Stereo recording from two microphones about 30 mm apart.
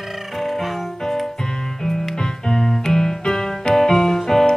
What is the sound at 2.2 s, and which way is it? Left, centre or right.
Music, centre.